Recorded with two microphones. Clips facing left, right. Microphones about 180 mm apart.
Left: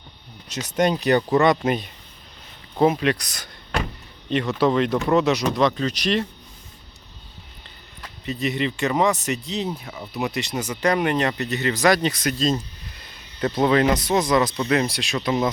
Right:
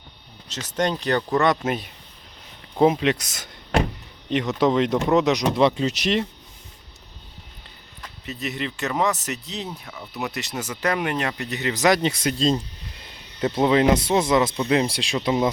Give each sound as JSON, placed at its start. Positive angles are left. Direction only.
{"t": 0.4, "sound": "speech", "side_deg": 15}
{"t": 3.0, "sound": "speech", "side_deg": -20}
{"t": 8.2, "sound": "speech", "side_deg": 0}
{"t": 14.8, "sound": "speech", "side_deg": -30}